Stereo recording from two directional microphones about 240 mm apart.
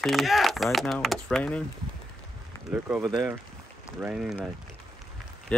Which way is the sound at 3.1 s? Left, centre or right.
Centre.